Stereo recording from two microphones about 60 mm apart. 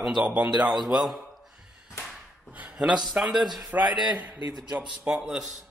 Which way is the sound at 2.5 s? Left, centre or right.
Right.